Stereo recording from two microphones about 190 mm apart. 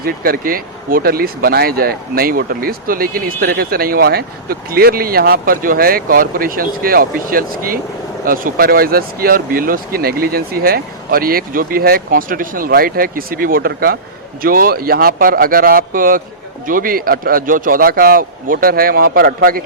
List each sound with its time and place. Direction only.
0.0 s speech: 50° right (ahead or behind)